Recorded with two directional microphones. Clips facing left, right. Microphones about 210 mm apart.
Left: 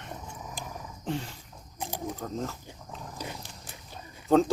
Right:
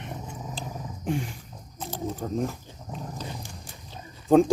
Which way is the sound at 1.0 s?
15° right (ahead or behind).